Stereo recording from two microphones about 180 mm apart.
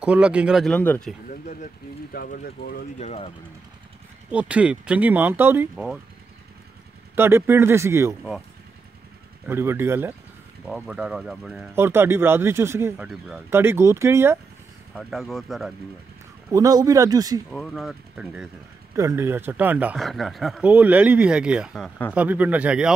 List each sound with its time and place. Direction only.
0.0 s speech: 5° right (ahead or behind)
0.7 s speech: 10° left (ahead or behind)
1.3 s speech: 45° left (ahead or behind)
2.1 s speech: 55° left (ahead or behind)
3.0 s speech: 35° left (ahead or behind)
4.3 s speech: 5° right (ahead or behind)
7.2 s speech: 15° right (ahead or behind)
9.5 s speech: 15° right (ahead or behind)
11.7 s speech: 15° right (ahead or behind)
15.0 s speech: centre (ahead or behind)
16.5 s speech: 20° right (ahead or behind)
17.5 s speech: 5° left (ahead or behind)
22.1 s speech: 10° right (ahead or behind)